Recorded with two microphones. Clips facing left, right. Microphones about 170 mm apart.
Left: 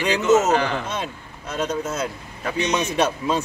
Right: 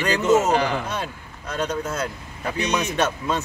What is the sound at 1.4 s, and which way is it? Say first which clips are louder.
Speech: left 1 dB; 5° left (ahead or behind).